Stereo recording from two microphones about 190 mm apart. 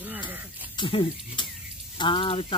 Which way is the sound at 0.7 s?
25° left (ahead or behind).